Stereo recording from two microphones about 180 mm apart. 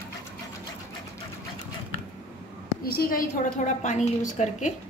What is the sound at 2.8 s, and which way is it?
A woman's voice, 55° left (ahead or behind).